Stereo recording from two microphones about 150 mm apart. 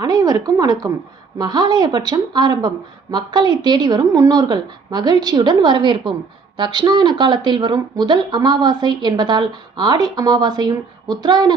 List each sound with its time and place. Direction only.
0.0 s a woman's voice: 25° right (ahead or behind)